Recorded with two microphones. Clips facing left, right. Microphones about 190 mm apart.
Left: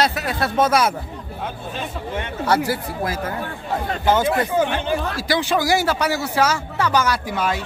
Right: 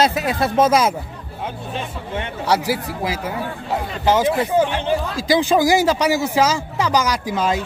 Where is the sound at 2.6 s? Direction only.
90° right.